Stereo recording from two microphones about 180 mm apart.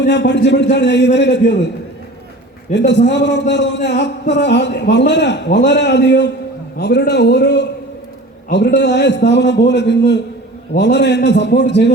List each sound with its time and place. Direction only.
0.0 s a man's voice: 70° left (ahead or behind)
2.7 s a man's voice: 75° left (ahead or behind)